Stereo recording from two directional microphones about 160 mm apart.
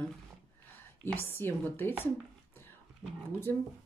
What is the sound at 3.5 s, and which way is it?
Speech, 15° left (ahead or behind).